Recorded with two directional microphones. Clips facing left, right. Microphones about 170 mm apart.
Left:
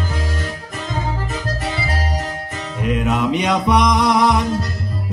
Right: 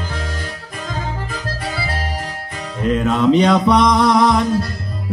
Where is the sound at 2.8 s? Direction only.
10° left (ahead or behind).